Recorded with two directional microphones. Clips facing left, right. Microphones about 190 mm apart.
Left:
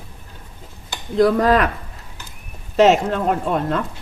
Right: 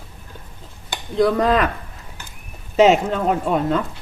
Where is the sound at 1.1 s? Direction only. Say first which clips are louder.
Left 2 dB; centre (ahead or behind).